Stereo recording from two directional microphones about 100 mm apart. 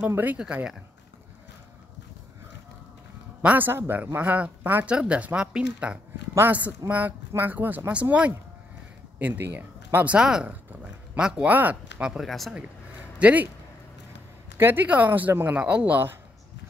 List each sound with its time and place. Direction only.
0.0 s speech: 15° right (ahead or behind)
3.4 s a man's voice: 20° right (ahead or behind); by 12.5 s centre (ahead or behind)
13.2 s speech: 15° right (ahead or behind)
14.6 s speech: 20° right (ahead or behind)